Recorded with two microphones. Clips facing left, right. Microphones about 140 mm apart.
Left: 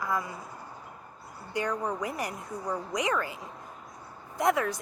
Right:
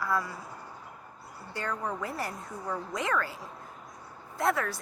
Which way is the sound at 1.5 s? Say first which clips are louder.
Left 4 dB; 15° left (ahead or behind).